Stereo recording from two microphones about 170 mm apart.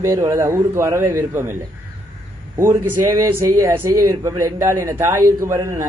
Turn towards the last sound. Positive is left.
turn(degrees=-15)  # may be behind; listen again after turning